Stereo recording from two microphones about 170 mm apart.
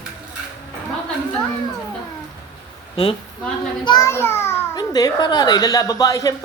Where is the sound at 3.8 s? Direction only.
20° left (ahead or behind).